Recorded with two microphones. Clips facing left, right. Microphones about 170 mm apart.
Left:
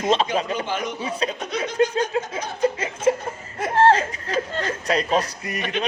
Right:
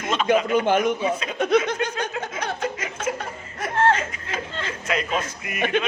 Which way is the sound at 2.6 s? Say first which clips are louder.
Left 5 dB; 30° left (ahead or behind).